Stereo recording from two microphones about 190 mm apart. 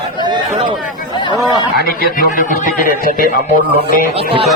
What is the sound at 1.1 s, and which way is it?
Speech, 25° left (ahead or behind).